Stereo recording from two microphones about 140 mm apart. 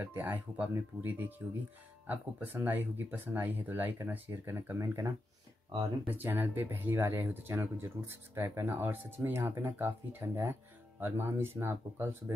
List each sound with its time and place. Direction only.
0.0 s speech: 15° right (ahead or behind)